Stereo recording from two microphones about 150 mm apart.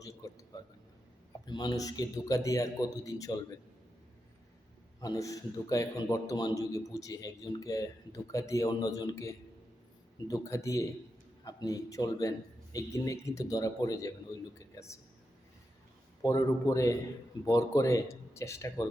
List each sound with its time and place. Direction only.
0.0 s a sound: 20° left (ahead or behind)
1.5 s a man's voice: 30° left (ahead or behind)
4.9 s a man's voice: 25° left (ahead or behind)
16.2 s a man's voice: 20° left (ahead or behind)